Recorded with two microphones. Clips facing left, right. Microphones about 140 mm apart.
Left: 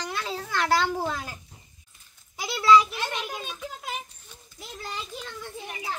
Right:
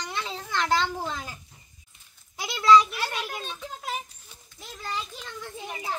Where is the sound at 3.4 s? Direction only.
Centre (ahead or behind).